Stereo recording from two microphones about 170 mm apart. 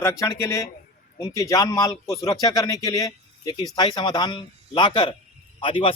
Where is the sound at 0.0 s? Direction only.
20° left (ahead or behind).